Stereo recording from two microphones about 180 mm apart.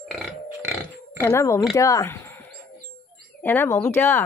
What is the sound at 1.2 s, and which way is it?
Speech, 15° left (ahead or behind).